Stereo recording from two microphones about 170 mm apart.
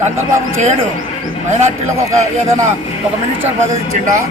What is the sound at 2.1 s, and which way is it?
Speech, 20° right (ahead or behind).